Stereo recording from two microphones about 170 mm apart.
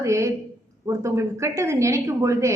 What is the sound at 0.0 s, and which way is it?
A woman's voice, 20° right (ahead or behind).